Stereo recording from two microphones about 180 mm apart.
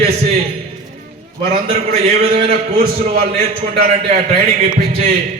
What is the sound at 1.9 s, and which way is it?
A man's voice, 50° right (ahead or behind).